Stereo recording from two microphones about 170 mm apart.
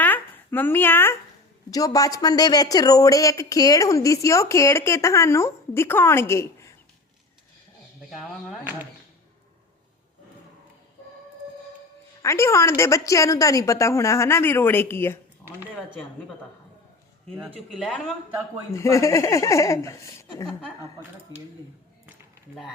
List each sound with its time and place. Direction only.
0.0 s a sound: 10° left (ahead or behind)
1.7 s speech: 20° left (ahead or behind)
8.1 s speech: 5° right (ahead or behind)
12.2 s a woman's voice: 15° left (ahead or behind)
17.3 s speech: 10° right (ahead or behind)
18.7 s a woman's voice: 15° left (ahead or behind)